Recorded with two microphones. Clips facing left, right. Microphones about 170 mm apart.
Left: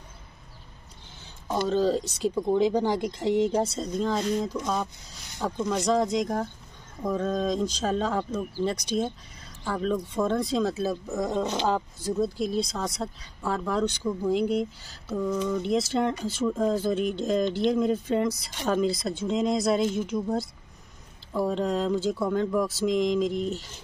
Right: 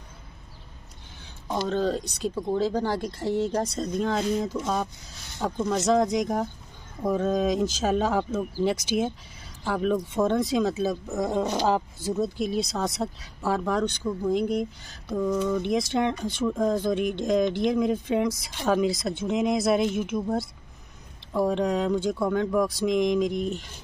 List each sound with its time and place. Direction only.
1.5 s speech: 5° left (ahead or behind)
2.5 s speech: 15° left (ahead or behind)
3.7 s speech: centre (ahead or behind)
11.3 s speech: 15° right (ahead or behind)
12.0 s speech: 5° right (ahead or behind)
14.4 s speech: 10° right (ahead or behind)
19.2 s speech: 15° right (ahead or behind)
19.5 s speech: 5° right (ahead or behind)